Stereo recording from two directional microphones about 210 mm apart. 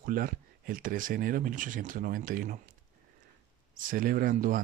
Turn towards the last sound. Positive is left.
turn(degrees=-40)  # may be behind; listen again after turning